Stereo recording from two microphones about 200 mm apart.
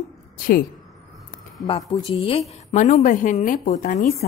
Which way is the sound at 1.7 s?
25° left (ahead or behind).